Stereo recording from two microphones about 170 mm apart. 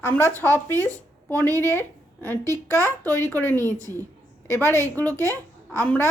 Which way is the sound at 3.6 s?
15° right (ahead or behind).